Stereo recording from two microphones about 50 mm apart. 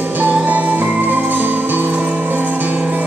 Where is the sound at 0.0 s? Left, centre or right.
Right.